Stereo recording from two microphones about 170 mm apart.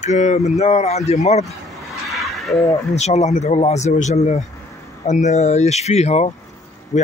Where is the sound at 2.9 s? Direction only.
40° left (ahead or behind).